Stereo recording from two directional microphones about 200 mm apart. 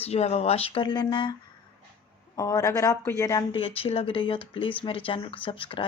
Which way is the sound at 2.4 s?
15° left (ahead or behind).